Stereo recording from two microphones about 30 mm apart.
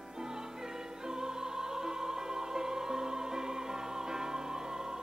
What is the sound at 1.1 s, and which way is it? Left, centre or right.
Opera, centre.